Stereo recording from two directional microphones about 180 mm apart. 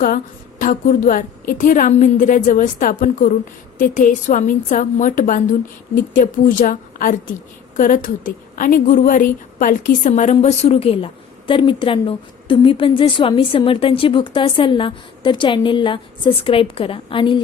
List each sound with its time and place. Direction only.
0.6 s a woman's voice: 50° left (ahead or behind); by 17.4 s 30° left (ahead or behind)